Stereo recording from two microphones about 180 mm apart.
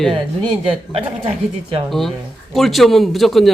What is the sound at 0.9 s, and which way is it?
Speech, 35° right (ahead or behind).